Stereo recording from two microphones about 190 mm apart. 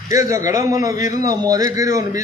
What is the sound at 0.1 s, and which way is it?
Speech, 15° right (ahead or behind).